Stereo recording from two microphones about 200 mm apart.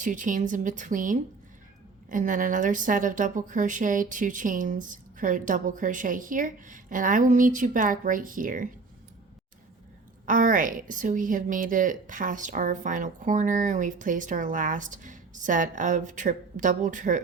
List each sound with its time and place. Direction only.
0.0 s a woman's voice: 40° right (ahead or behind)
10.2 s a woman's voice: 40° right (ahead or behind)